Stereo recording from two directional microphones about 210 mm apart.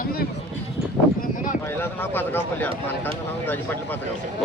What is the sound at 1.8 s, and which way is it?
Speech, 10° left (ahead or behind).